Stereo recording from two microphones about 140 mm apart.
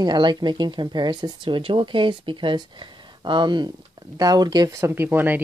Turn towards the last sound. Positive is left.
turn(degrees=-15)  # may be behind; listen again after turning